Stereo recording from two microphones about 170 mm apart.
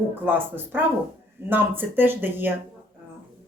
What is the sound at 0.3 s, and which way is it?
Speech, 10° right (ahead or behind).